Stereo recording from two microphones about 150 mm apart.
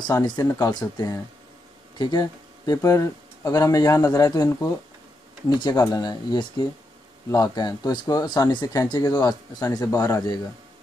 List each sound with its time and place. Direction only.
0.0 s speech: 25° left (ahead or behind)